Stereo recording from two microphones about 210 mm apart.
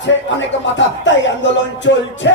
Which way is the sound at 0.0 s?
60° left (ahead or behind).